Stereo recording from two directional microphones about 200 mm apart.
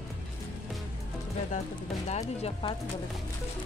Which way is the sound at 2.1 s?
30° left (ahead or behind).